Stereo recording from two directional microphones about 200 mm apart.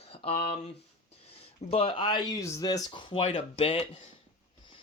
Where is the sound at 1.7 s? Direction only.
25° left (ahead or behind).